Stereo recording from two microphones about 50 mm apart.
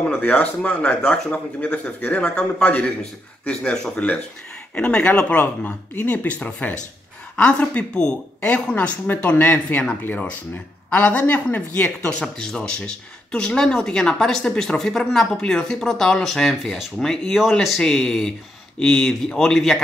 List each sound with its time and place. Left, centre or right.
0.0 s a sound: centre
0.3 s a man's voice: left
2.2 s a man's voice: left
5.4 s a man's voice: left
8.7 s a man's voice: left; by 18.1 s centre
18.8 s speech: centre